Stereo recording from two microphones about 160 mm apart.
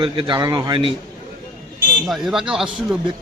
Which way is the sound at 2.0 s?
Centre (ahead or behind).